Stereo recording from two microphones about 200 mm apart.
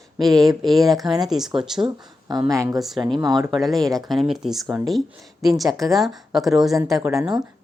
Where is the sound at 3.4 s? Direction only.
Centre (ahead or behind).